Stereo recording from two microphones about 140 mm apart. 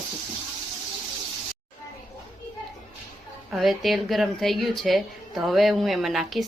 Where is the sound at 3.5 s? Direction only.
Centre (ahead or behind).